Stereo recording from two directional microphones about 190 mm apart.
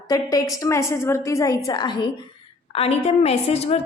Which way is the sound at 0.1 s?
20° left (ahead or behind).